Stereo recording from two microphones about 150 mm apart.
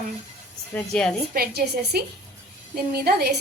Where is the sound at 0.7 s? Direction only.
5° left (ahead or behind).